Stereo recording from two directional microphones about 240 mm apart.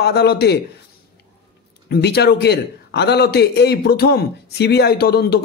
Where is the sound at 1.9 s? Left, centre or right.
Left.